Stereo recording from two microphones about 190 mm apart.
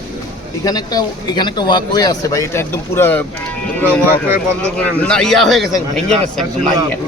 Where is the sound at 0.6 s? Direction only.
20° left (ahead or behind).